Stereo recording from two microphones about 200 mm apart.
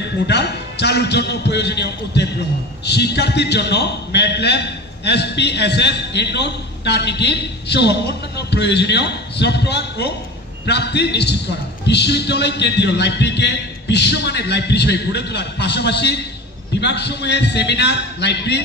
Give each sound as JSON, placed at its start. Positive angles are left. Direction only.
{"t": 0.3, "sound": "a man's voice", "side_deg": 55}